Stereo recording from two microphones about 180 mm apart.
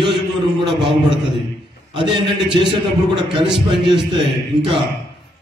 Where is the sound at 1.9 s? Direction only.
25° right (ahead or behind).